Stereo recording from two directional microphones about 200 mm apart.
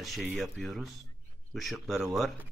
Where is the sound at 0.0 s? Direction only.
Centre (ahead or behind).